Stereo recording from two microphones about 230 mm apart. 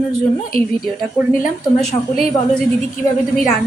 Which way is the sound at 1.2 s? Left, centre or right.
Centre.